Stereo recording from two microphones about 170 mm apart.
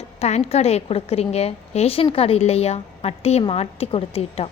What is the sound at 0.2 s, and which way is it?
A woman's voice, 40° left (ahead or behind).